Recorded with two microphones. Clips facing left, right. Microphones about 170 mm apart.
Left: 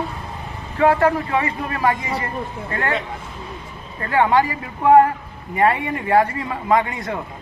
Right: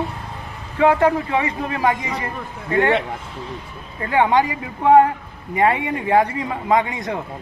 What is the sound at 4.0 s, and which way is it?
A man's voice, 15° right (ahead or behind).